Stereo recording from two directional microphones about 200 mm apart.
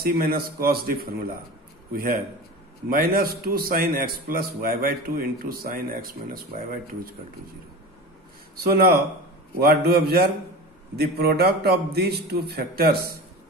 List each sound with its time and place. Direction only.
0.0 s a man's voice: 45° right (ahead or behind)
2.9 s a man's voice: 45° right (ahead or behind)
8.5 s a man's voice: 50° right (ahead or behind)